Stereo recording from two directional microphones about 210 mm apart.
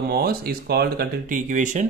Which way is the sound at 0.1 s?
45° right (ahead or behind).